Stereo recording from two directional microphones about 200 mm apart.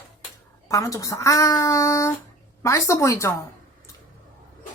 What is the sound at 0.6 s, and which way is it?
Speech, 15° left (ahead or behind).